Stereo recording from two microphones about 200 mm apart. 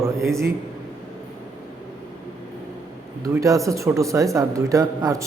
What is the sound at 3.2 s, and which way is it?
Speech, 15° right (ahead or behind).